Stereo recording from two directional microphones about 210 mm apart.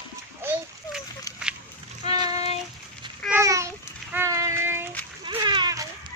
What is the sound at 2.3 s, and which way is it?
Child singing, 30° left (ahead or behind).